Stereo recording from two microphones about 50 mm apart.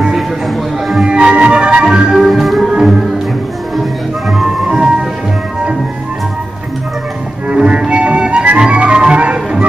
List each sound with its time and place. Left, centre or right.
0.5 s music: centre
1.0 s music: right
2.1 s music: centre
4.6 s music: centre
7.4 s music: right